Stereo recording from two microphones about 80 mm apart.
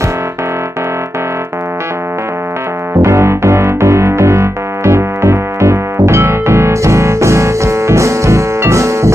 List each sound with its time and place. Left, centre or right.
3.0 s music: right